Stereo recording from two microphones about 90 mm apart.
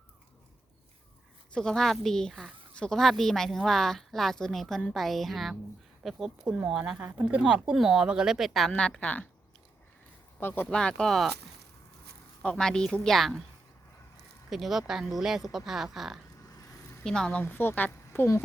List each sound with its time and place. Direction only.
1.5 s speech: 5° left (ahead or behind)
8.7 s a woman's voice: 10° left (ahead or behind)
10.4 s a woman's voice: 25° left (ahead or behind)
10.7 s a woman's voice: 10° left (ahead or behind)
12.4 s a woman's voice: 10° left (ahead or behind)
14.5 s speech: 5° right (ahead or behind)
17.4 s a woman's voice: 25° left (ahead or behind)